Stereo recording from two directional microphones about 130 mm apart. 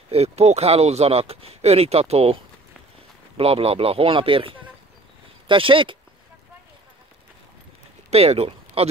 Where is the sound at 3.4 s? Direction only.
50° right (ahead or behind).